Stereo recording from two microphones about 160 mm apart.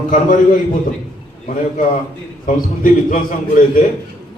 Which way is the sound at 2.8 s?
55° left (ahead or behind).